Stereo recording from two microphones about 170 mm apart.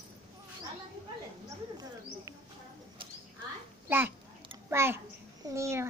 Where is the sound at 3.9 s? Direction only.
10° right (ahead or behind).